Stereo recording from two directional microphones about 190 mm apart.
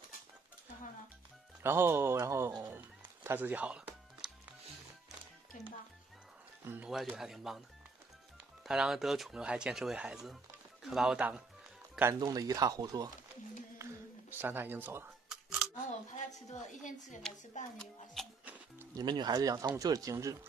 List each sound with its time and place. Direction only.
1.6 s speech: 10° right (ahead or behind)
3.3 s music: 10° right (ahead or behind)
5.5 s speech: 45° left (ahead or behind)
6.6 s speech: 10° right (ahead or behind)
6.9 s speech: centre (ahead or behind)
8.6 s speech: 5° right (ahead or behind)
14.3 s camera: 10° right (ahead or behind)
16.5 s a woman's voice: 40° left (ahead or behind)
17.7 s music: centre (ahead or behind)
18.9 s speech: 20° right (ahead or behind)